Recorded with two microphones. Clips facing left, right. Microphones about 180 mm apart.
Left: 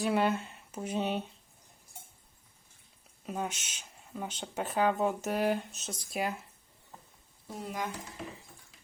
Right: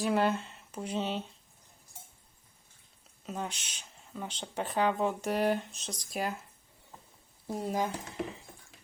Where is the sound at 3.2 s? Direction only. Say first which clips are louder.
Left 2 dB; 10° left (ahead or behind).